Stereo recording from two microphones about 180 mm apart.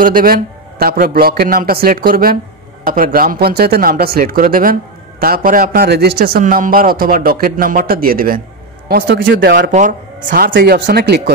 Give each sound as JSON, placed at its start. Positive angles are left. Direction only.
{"t": 0.0, "sound": "a man's voice", "side_deg": -50}